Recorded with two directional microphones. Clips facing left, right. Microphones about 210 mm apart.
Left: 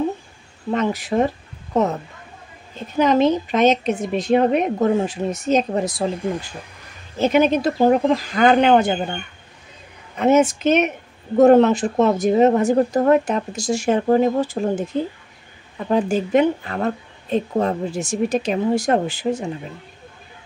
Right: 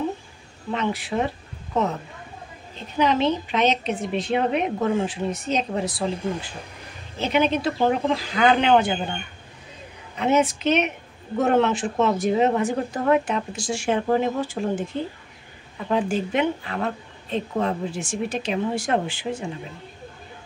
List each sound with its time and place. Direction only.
0.7 s speech: 40° left (ahead or behind)
3.0 s speech: 45° left (ahead or behind)
7.2 s speech: 45° left (ahead or behind)
10.1 s speech: 45° left (ahead or behind)